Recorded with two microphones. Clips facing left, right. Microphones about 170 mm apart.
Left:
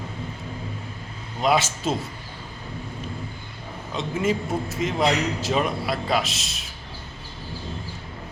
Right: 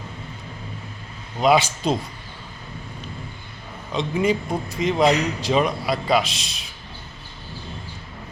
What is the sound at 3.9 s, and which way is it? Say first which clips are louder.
A man's voice: right 3 dB; centre (ahead or behind).